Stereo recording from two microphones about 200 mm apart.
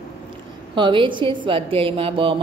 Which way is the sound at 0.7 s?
25° right (ahead or behind).